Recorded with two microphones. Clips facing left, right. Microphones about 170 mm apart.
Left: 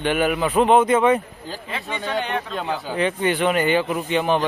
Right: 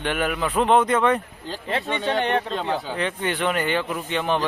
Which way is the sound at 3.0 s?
5° left (ahead or behind).